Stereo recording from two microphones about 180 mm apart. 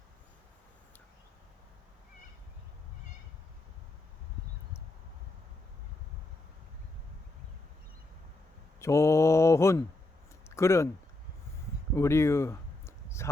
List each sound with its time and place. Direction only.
8.8 s mantra: 15° left (ahead or behind)
10.4 s a sound: 15° left (ahead or behind)
11.9 s speech: 15° left (ahead or behind)